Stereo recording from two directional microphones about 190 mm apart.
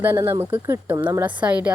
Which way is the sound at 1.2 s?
10° right (ahead or behind).